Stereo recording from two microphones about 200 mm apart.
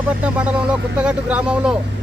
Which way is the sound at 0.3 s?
5° right (ahead or behind).